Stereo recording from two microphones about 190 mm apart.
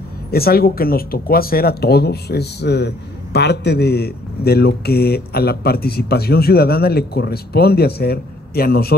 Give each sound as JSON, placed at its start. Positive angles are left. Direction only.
{"t": 0.3, "sound": "speech", "side_deg": 55}